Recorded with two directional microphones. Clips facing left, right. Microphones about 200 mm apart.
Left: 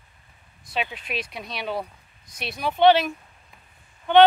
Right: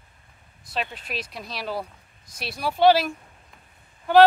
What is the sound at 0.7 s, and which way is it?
Speech, centre (ahead or behind).